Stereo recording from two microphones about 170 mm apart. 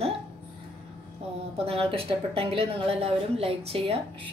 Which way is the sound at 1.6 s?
35° right (ahead or behind).